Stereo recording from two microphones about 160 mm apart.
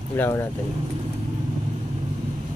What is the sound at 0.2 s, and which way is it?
Speech, 15° left (ahead or behind).